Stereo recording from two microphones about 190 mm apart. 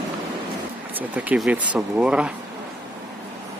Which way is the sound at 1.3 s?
5° right (ahead or behind).